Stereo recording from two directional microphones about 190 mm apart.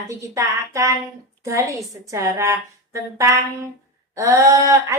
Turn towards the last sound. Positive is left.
turn(degrees=-15)  # may be behind; listen again after turning